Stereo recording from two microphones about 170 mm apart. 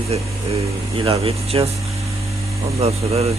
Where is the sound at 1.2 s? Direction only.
35° right (ahead or behind).